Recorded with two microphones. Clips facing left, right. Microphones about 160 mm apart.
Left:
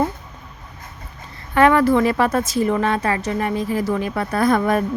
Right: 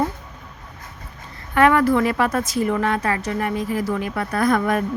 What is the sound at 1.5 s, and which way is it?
Speech, 30° left (ahead or behind).